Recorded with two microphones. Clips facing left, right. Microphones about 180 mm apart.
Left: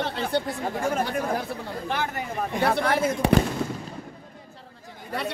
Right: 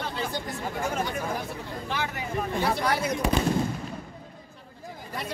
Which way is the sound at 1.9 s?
55° left (ahead or behind).